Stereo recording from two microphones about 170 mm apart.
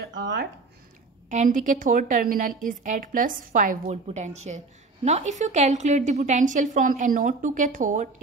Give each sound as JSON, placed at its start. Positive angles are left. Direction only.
{"t": 0.0, "sound": "speech", "side_deg": -85}
{"t": 1.3, "sound": "a woman's voice", "side_deg": -45}